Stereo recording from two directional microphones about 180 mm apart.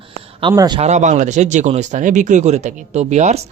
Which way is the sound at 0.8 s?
40° right (ahead or behind).